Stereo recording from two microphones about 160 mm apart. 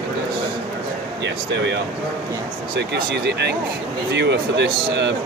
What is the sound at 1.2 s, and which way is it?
Speech, 90° right.